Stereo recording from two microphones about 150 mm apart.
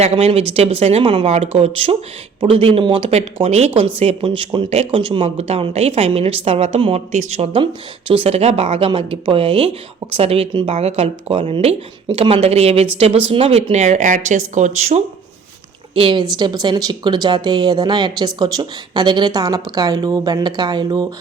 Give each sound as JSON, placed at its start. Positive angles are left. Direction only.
{"t": 0.0, "sound": "speech", "side_deg": -45}
{"t": 16.0, "sound": "speech", "side_deg": -35}